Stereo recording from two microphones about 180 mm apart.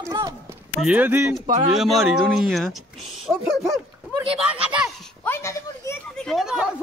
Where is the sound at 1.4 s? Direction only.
40° right (ahead or behind).